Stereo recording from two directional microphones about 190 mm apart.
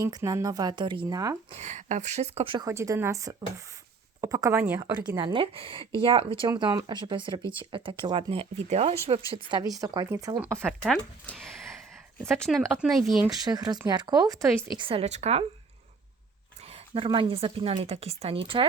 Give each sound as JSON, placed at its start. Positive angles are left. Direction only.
{"t": 0.0, "sound": "speech", "side_deg": -20}
{"t": 1.5, "sound": "speech", "side_deg": -40}
{"t": 2.6, "sound": "a woman's voice", "side_deg": -15}
{"t": 4.8, "sound": "a woman's voice", "side_deg": -25}
{"t": 10.8, "sound": "speech", "side_deg": 0}
{"t": 13.3, "sound": "speech", "side_deg": -20}
{"t": 16.9, "sound": "speech", "side_deg": -30}